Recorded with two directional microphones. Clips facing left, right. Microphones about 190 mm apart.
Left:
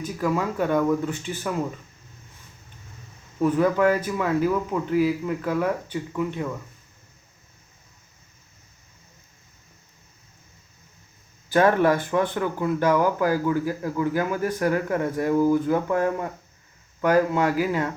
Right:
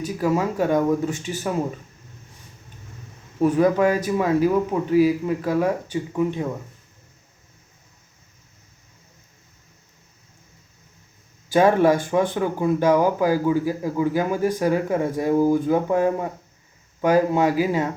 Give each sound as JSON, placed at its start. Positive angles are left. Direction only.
{"t": 0.3, "sound": "speech", "side_deg": -15}
{"t": 3.4, "sound": "speech", "side_deg": -15}
{"t": 5.2, "sound": "speech", "side_deg": -35}
{"t": 5.5, "sound": "speech", "side_deg": -15}
{"t": 11.4, "sound": "speech", "side_deg": -15}